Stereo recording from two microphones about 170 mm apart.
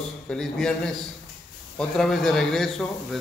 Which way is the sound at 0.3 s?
5° left (ahead or behind).